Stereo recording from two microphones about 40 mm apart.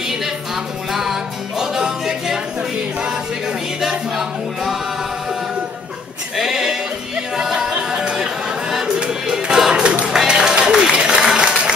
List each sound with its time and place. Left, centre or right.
1.6 s music: centre
6.3 s sheep: centre
7.3 s a sound: centre
7.7 s music: right
9.3 s music: centre
11.3 s a sound: right